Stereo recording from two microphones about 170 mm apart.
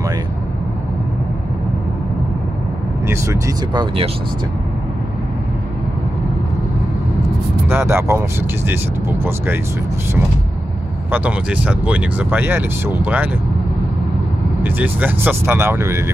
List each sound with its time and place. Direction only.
3.1 s speech: 15° right (ahead or behind)
7.6 s speech: 15° right (ahead or behind)
11.1 s speech: 10° right (ahead or behind)
14.6 s speech: 10° right (ahead or behind)